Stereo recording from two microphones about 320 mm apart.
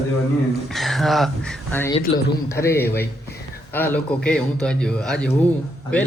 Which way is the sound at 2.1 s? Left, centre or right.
Centre.